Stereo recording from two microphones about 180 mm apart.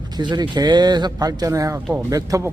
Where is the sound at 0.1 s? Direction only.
25° right (ahead or behind).